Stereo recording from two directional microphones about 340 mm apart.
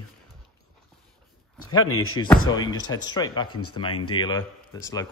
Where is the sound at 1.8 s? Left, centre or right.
Left.